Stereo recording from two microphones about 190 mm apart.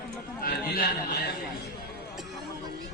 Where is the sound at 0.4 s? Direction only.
50° left (ahead or behind).